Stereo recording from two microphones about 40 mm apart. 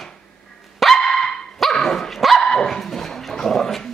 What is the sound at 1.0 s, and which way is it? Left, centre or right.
Dog, centre.